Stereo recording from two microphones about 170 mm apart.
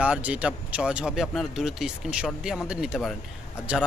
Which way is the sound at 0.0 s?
10° right (ahead or behind).